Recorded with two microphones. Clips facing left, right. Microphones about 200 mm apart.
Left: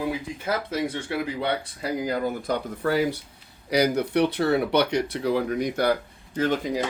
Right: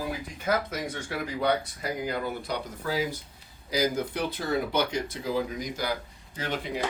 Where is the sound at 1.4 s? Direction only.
30° left (ahead or behind).